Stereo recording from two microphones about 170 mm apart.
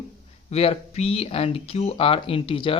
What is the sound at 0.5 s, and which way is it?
Speech, 35° left (ahead or behind).